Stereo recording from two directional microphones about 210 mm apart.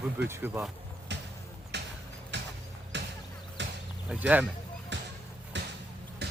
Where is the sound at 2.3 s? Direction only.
55° right (ahead or behind).